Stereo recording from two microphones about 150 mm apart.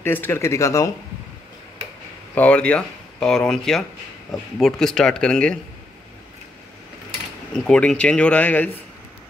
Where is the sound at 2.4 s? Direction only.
10° left (ahead or behind).